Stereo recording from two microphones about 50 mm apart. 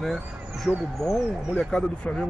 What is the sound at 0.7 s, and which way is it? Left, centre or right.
Speech, right.